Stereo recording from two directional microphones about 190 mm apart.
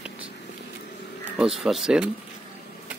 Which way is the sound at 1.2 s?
5° right (ahead or behind).